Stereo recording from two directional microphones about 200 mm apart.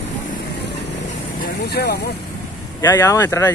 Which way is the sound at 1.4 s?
55° left (ahead or behind).